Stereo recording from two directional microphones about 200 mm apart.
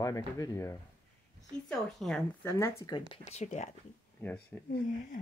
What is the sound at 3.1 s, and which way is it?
Speech, 35° left (ahead or behind).